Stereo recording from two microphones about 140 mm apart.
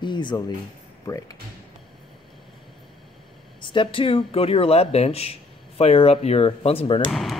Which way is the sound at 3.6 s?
35° left (ahead or behind).